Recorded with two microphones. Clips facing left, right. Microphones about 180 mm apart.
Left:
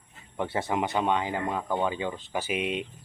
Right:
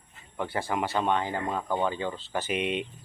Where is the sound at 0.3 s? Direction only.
25° left (ahead or behind).